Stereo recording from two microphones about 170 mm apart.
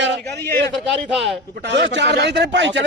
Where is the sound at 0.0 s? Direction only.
90° right.